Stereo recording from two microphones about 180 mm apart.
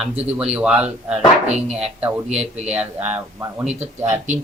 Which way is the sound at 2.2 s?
35° right (ahead or behind).